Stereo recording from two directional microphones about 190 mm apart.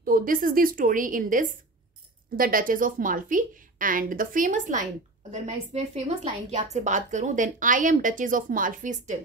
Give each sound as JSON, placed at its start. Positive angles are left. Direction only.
{"t": 0.0, "sound": "a woman's voice", "side_deg": -45}